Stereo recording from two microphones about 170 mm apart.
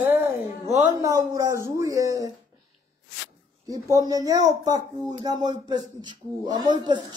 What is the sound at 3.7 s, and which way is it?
Speech, 20° right (ahead or behind).